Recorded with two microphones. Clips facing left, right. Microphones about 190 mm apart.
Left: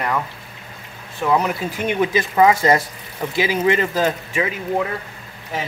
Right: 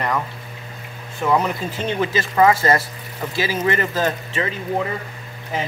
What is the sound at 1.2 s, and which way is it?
Speech, centre (ahead or behind).